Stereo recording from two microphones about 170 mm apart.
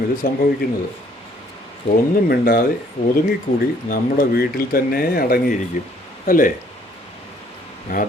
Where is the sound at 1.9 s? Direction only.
35° left (ahead or behind).